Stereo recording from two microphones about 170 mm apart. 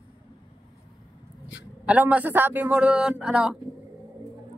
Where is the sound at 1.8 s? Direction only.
10° right (ahead or behind).